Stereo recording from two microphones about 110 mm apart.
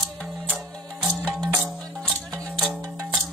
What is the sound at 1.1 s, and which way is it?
Music, 10° left (ahead or behind).